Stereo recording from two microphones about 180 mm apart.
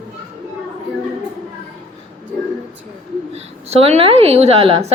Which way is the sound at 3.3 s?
35° right (ahead or behind).